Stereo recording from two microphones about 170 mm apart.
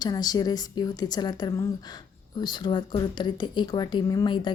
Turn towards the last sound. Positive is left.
turn(degrees=25)  # may be behind; listen again after turning